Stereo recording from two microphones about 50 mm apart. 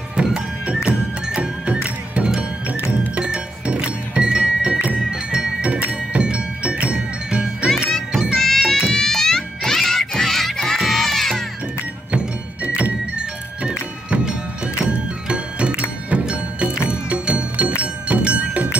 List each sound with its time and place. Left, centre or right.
0.1 s music: centre
1.7 s music: right; by 5.7 s centre
5.7 s music: right
7.2 s music: centre
7.6 s music: centre
12.6 s music: right